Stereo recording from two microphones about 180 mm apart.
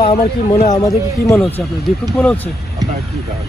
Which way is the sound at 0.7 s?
20° left (ahead or behind).